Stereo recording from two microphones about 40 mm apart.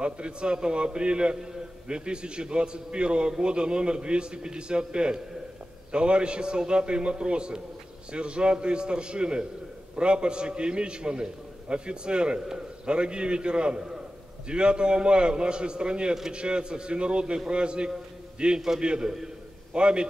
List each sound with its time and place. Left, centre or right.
0.0 s a man's voice: right